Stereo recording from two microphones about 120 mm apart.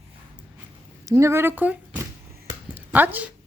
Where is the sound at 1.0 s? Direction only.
25° right (ahead or behind).